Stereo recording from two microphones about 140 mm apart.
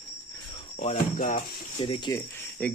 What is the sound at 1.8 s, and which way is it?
Speech, 35° left (ahead or behind).